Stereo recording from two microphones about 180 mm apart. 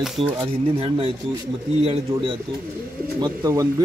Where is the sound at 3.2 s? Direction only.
20° right (ahead or behind).